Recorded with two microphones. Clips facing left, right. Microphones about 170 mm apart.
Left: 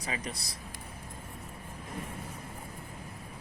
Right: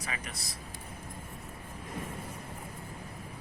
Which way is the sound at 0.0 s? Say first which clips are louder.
Left 3 dB; 30° left (ahead or behind).